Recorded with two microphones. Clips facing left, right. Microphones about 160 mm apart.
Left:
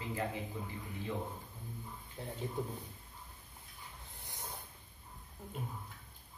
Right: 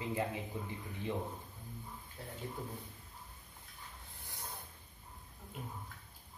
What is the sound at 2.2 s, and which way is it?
Speech, 20° left (ahead or behind).